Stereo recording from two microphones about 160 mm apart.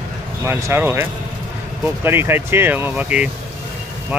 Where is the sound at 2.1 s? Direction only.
15° right (ahead or behind).